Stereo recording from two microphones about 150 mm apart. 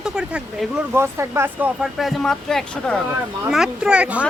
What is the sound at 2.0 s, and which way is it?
Speech, 5° left (ahead or behind).